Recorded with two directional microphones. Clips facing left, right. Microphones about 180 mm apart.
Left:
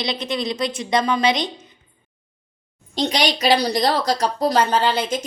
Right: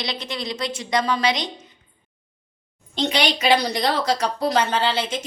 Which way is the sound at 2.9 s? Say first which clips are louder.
Left 1 dB; 40° left (ahead or behind).